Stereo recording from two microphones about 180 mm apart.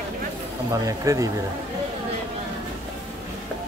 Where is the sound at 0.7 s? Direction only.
15° right (ahead or behind).